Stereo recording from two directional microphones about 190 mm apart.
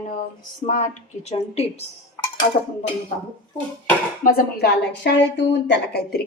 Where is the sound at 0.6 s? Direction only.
40° left (ahead or behind).